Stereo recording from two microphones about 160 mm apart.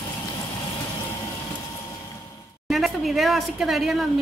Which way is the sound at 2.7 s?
Centre (ahead or behind).